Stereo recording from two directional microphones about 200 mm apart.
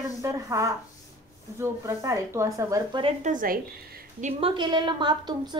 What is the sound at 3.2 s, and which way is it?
Speech, 40° right (ahead or behind).